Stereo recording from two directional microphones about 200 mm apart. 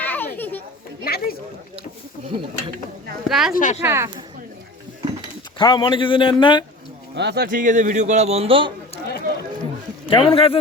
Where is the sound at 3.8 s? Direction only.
15° right (ahead or behind).